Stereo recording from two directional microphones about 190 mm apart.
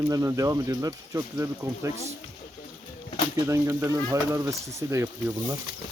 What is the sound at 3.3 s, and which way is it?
Speech, 15° right (ahead or behind).